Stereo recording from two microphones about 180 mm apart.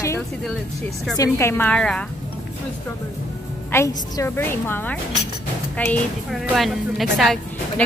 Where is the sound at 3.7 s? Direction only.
15° left (ahead or behind); by 7.8 s centre (ahead or behind).